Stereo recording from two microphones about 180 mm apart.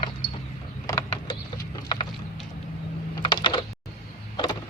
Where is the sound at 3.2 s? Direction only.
30° left (ahead or behind).